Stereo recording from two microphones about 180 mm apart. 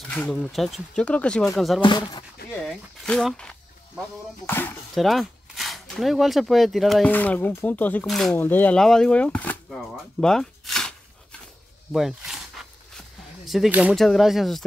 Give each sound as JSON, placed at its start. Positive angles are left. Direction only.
{"t": 0.1, "sound": "speech", "side_deg": 5}
{"t": 1.8, "sound": "speech", "side_deg": 25}
{"t": 2.5, "sound": "a sound", "side_deg": 5}
{"t": 4.5, "sound": "speech", "side_deg": 10}
{"t": 4.9, "sound": "speech", "side_deg": 0}
{"t": 10.2, "sound": "a sound", "side_deg": 5}
{"t": 11.9, "sound": "speech", "side_deg": 0}
{"t": 12.6, "sound": "a sound", "side_deg": 0}
{"t": 13.5, "sound": "speech", "side_deg": -5}